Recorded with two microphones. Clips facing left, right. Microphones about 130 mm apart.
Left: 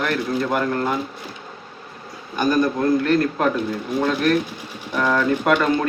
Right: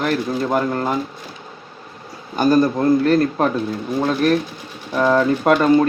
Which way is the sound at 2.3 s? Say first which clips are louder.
Right 4 dB; 35° right (ahead or behind).